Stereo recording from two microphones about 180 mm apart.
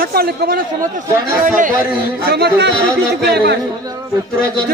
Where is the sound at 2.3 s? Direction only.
65° right (ahead or behind).